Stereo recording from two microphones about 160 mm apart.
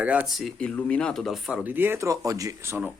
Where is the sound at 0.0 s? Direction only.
10° right (ahead or behind).